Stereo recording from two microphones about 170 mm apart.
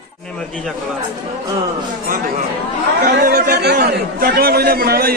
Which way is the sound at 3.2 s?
70° right (ahead or behind).